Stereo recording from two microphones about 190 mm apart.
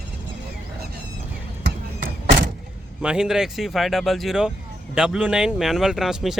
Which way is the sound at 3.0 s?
5° right (ahead or behind).